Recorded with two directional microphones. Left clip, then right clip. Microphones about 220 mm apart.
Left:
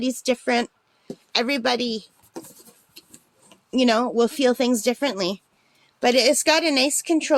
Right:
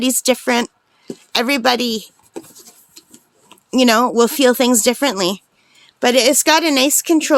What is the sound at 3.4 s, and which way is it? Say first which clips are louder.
A woman's voice: right 6 dB; 30° right (ahead or behind).